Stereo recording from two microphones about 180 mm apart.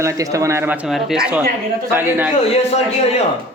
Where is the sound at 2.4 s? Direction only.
35° left (ahead or behind).